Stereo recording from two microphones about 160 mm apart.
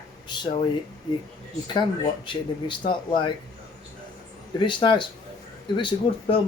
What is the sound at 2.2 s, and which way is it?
Speech, 30° left (ahead or behind).